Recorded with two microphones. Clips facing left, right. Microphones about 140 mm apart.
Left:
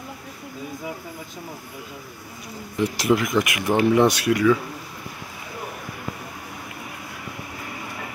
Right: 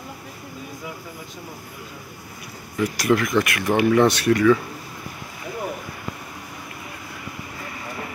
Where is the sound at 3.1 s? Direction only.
15° left (ahead or behind).